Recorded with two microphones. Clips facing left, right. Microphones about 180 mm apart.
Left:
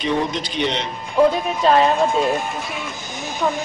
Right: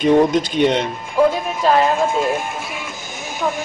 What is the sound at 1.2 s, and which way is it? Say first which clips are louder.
Music: even; 5° right (ahead or behind).